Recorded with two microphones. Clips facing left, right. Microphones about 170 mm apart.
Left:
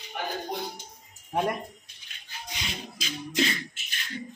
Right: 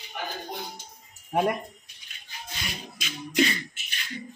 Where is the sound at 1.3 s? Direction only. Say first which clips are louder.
Right 3 dB; 5° right (ahead or behind).